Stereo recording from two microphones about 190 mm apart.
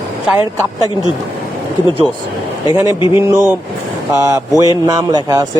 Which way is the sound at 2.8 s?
15° right (ahead or behind).